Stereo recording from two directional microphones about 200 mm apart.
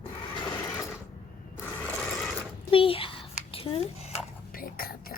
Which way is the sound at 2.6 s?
25° left (ahead or behind).